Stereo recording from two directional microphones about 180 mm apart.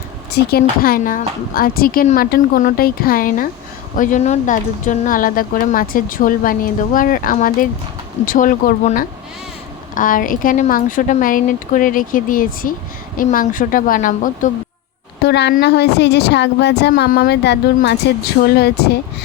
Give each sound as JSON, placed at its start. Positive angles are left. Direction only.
{"t": 0.3, "sound": "speech", "side_deg": 60}
{"t": 15.2, "sound": "speech", "side_deg": 70}
{"t": 16.9, "sound": "speech", "side_deg": 55}